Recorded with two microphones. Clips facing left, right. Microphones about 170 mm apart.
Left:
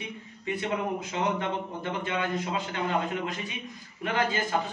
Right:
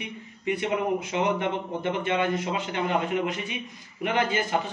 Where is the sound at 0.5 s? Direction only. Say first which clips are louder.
Right 3 dB; 20° right (ahead or behind).